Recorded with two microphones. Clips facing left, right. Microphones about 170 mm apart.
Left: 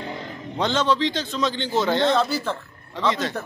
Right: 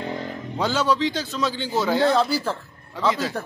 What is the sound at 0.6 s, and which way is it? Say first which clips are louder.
Speech: even; 10° right (ahead or behind).